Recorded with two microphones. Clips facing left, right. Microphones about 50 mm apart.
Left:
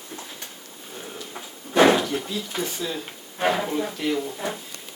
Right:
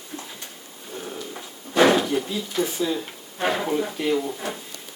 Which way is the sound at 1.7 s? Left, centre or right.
Left.